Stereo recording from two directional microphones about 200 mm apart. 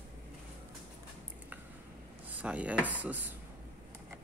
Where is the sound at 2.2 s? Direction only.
5° right (ahead or behind).